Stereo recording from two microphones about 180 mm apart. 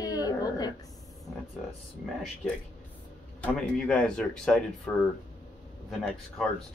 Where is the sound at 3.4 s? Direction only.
5° left (ahead or behind).